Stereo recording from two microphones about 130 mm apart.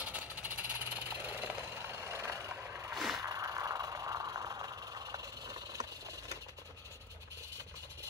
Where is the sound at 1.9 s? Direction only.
20° right (ahead or behind).